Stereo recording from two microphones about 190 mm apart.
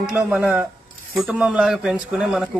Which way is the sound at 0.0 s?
5° right (ahead or behind).